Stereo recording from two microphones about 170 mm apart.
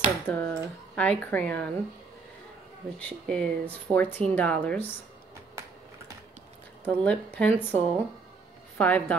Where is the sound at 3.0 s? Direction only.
5° left (ahead or behind).